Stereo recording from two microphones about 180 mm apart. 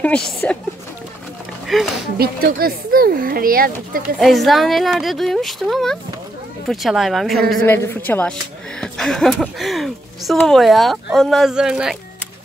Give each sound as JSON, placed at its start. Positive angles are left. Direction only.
{"t": 0.0, "sound": "a woman's voice", "side_deg": 5}
{"t": 1.7, "sound": "speech", "side_deg": 0}
{"t": 2.1, "sound": "speech", "side_deg": -55}
{"t": 4.2, "sound": "speech", "side_deg": 0}
{"t": 7.6, "sound": "a woman's voice", "side_deg": 10}